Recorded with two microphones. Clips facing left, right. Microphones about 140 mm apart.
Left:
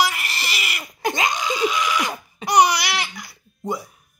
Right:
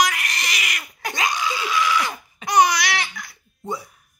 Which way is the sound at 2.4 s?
10° left (ahead or behind).